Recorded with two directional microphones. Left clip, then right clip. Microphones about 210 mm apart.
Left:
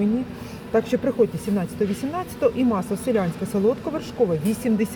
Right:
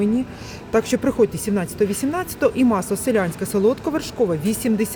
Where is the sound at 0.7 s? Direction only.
40° right (ahead or behind).